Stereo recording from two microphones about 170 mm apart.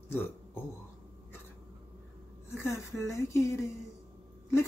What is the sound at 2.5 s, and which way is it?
Speech, 15° left (ahead or behind).